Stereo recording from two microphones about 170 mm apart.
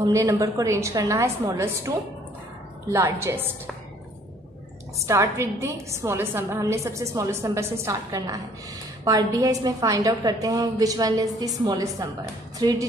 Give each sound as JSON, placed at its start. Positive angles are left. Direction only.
{"t": 0.0, "sound": "a woman's voice", "side_deg": -20}
{"t": 5.0, "sound": "a woman's voice", "side_deg": -15}